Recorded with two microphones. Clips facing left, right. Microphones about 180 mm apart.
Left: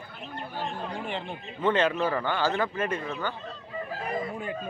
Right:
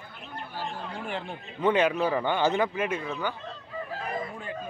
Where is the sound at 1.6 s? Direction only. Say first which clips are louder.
Right 1 dB; 15° right (ahead or behind).